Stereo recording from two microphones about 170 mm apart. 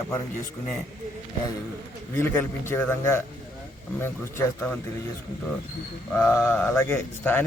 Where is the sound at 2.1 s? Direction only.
15° left (ahead or behind).